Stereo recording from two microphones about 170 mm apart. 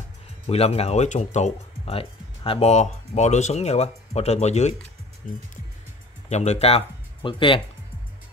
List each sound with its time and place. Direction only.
0.5 s speech: 35° left (ahead or behind)
5.2 s speech: 55° left (ahead or behind)
6.2 s speech: 40° left (ahead or behind)